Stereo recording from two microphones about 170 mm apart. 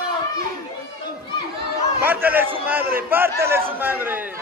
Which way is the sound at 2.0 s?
10° right (ahead or behind).